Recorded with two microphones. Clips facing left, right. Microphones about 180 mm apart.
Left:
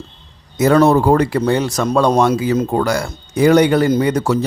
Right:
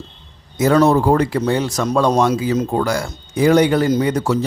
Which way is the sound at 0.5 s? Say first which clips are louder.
Left 2 dB; 65° left (ahead or behind).